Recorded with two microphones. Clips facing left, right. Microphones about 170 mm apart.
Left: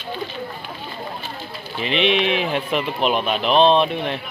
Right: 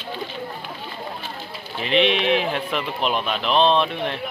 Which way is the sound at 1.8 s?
40° right (ahead or behind).